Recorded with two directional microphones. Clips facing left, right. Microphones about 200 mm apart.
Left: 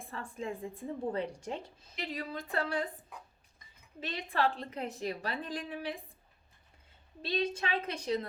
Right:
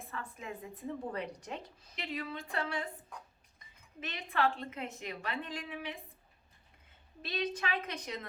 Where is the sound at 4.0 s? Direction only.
35° left (ahead or behind).